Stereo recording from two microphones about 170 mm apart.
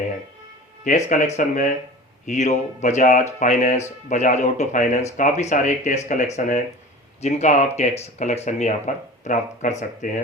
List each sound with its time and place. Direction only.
0.9 s speech: 40° left (ahead or behind)